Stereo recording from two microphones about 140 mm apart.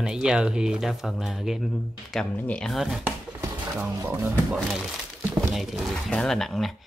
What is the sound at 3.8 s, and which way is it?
Speech, 15° right (ahead or behind).